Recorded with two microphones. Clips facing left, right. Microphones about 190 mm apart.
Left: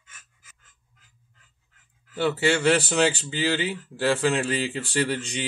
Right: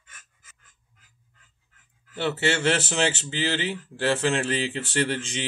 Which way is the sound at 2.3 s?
Centre (ahead or behind).